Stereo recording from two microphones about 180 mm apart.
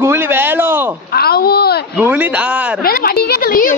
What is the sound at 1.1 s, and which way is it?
Speech, 60° left (ahead or behind).